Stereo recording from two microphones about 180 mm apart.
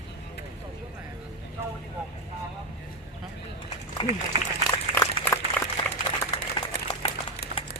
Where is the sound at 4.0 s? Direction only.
30° left (ahead or behind).